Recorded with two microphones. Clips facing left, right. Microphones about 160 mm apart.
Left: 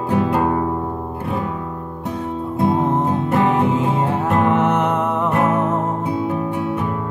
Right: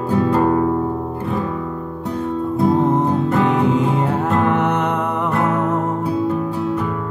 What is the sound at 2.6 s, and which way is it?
Music, 15° left (ahead or behind).